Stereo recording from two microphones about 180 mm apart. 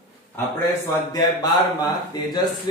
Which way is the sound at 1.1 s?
20° left (ahead or behind).